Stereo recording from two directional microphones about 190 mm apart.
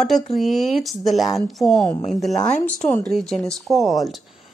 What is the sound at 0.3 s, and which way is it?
Speech, centre (ahead or behind).